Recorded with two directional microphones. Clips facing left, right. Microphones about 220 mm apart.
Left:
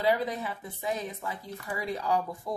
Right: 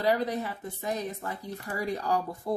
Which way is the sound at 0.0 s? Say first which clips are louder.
Right 1 dB; 40° right (ahead or behind).